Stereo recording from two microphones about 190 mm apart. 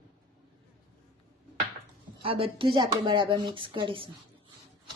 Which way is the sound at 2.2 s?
30° right (ahead or behind).